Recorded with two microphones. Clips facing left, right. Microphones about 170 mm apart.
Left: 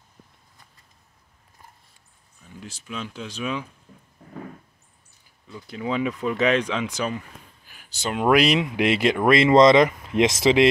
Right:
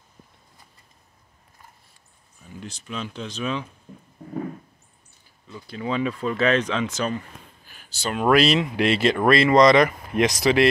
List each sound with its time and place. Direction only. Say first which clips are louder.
2.6 s speech: right 1 dB; 5° left (ahead or behind)
5.5 s speech: even; 15° left (ahead or behind)